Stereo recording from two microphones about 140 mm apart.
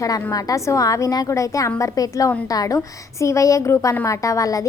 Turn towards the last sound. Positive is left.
turn(degrees=25)  # may be behind; listen again after turning